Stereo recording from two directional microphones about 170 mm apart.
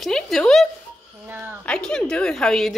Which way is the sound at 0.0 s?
Centre (ahead or behind).